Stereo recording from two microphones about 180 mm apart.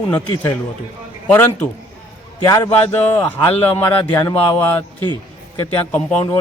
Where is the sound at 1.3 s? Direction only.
10° left (ahead or behind).